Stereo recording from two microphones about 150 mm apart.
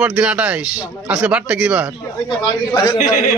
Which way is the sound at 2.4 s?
25° left (ahead or behind).